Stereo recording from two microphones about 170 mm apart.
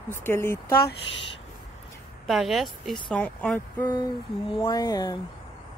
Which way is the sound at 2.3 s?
Centre (ahead or behind).